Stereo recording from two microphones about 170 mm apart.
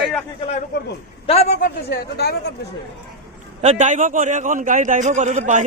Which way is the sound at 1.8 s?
75° left (ahead or behind).